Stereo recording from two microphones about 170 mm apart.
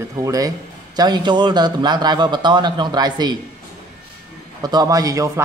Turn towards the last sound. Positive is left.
turn(degrees=-20)  # may be behind; listen again after turning